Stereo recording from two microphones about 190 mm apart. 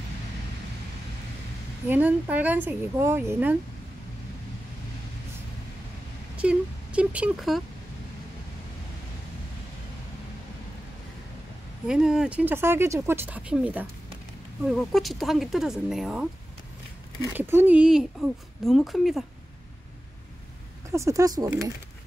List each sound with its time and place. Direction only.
1.9 s speech: 10° right (ahead or behind)
6.3 s a sound: 5° right (ahead or behind)
11.9 s speech: 5° right (ahead or behind)
20.9 s speech: 15° right (ahead or behind)